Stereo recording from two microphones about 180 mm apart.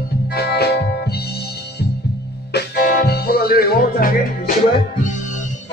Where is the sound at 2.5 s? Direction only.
55° left (ahead or behind).